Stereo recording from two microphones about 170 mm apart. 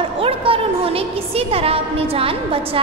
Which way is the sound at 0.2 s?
35° right (ahead or behind).